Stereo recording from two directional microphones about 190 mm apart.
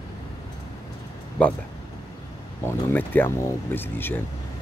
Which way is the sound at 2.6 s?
10° left (ahead or behind).